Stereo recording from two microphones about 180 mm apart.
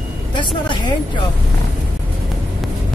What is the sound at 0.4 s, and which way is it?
Speech, 25° left (ahead or behind).